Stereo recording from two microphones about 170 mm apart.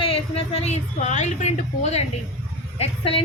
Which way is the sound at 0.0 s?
35° left (ahead or behind).